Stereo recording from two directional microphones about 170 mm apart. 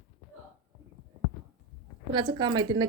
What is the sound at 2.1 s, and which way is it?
Speech, 25° right (ahead or behind).